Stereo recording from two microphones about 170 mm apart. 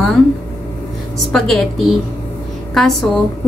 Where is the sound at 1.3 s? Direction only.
Centre (ahead or behind).